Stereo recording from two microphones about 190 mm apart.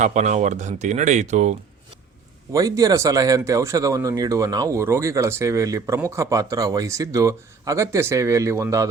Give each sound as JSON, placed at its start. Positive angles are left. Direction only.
{"t": 0.0, "sound": "speech", "side_deg": -40}
{"t": 2.5, "sound": "speech", "side_deg": -20}